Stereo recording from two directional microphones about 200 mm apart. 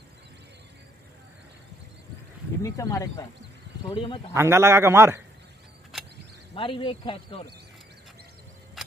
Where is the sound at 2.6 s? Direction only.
15° left (ahead or behind).